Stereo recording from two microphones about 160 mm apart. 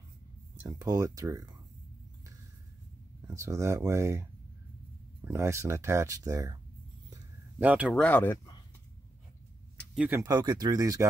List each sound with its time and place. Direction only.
0.7 s speech: 25° right (ahead or behind)
3.3 s speech: 20° right (ahead or behind)
7.1 s a sound: 10° right (ahead or behind)
7.9 s speech: 10° left (ahead or behind)
9.9 s speech: 10° right (ahead or behind)
10.2 s speech: 25° right (ahead or behind)